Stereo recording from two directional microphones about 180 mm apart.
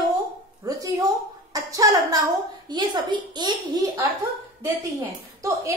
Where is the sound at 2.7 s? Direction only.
25° right (ahead or behind).